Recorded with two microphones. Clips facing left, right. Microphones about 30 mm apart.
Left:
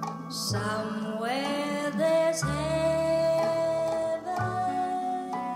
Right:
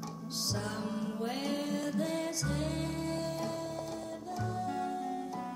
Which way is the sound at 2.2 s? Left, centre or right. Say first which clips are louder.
Left 8 dB; left.